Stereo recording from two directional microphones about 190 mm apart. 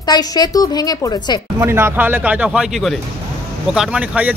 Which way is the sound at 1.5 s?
10° right (ahead or behind).